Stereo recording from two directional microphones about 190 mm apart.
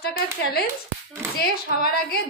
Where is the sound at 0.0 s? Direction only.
55° left (ahead or behind).